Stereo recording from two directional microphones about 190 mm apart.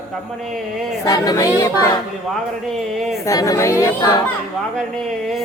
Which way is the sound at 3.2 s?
15° left (ahead or behind).